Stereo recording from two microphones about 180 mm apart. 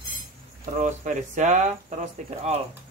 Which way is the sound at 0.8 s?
45° right (ahead or behind).